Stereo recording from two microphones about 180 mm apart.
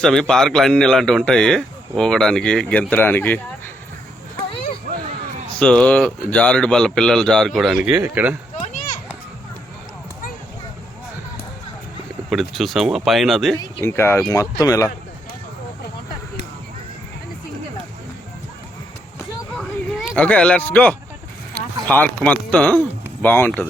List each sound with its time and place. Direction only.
0.0 s speech: 5° left (ahead or behind)
5.5 s speech: 5° left (ahead or behind)
8.5 s a sound: 45° left (ahead or behind)
12.3 s speech: centre (ahead or behind)
13.6 s speech: 15° left (ahead or behind)
19.5 s a sound: 5° left (ahead or behind)
21.8 s speech: 10° left (ahead or behind)